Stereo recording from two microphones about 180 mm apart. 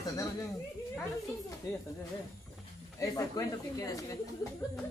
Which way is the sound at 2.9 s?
20° left (ahead or behind).